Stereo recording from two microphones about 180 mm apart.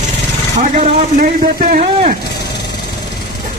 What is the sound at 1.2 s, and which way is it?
Speech, 50° right (ahead or behind).